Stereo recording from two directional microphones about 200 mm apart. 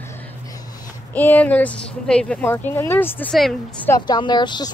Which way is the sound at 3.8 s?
20° left (ahead or behind).